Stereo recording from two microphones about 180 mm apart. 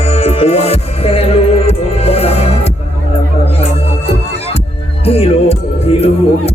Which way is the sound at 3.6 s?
35° left (ahead or behind).